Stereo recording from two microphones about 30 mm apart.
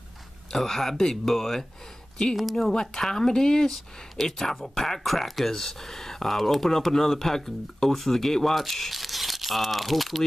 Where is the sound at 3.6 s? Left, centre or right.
Centre.